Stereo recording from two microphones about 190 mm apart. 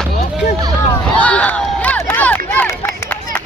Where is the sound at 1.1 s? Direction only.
5° left (ahead or behind).